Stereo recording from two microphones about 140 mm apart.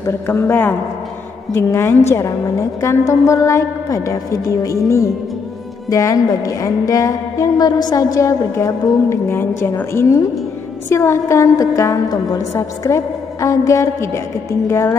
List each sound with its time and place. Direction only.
0.0 s a man's voice: 20° left (ahead or behind)